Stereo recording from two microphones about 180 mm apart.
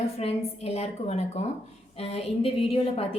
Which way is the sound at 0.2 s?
35° left (ahead or behind).